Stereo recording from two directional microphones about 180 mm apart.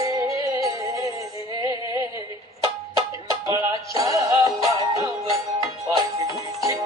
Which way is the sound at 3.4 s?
15° right (ahead or behind).